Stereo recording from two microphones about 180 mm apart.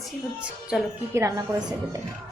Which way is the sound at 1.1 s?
15° right (ahead or behind).